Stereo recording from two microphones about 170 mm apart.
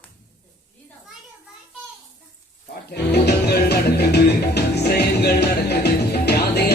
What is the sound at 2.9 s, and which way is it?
Music, 75° left (ahead or behind).